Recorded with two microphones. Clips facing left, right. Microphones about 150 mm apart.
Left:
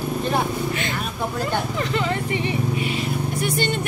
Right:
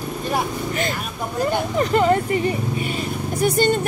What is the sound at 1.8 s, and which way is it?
Speech, 40° right (ahead or behind).